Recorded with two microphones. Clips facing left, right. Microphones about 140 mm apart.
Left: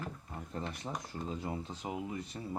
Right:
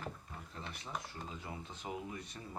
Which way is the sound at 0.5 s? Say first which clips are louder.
Left 5 dB; 45° left (ahead or behind).